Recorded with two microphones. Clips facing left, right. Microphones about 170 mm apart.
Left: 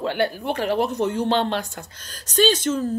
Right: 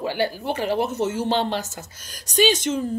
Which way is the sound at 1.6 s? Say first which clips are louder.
Left 1 dB; 5° right (ahead or behind).